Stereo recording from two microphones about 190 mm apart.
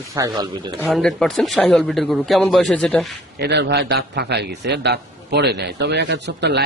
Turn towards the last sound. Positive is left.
turn(degrees=-60)  # may be behind; listen again after turning